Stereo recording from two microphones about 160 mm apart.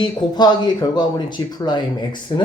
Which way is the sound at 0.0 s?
25° left (ahead or behind).